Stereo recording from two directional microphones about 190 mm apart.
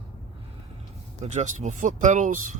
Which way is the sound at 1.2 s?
40° right (ahead or behind).